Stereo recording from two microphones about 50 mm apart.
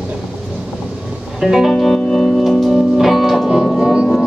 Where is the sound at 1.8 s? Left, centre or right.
Centre.